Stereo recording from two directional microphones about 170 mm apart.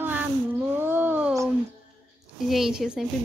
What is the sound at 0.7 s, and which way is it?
Cat, 10° right (ahead or behind).